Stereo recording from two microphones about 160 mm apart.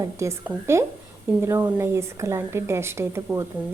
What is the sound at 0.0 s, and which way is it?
A woman's voice, 20° right (ahead or behind).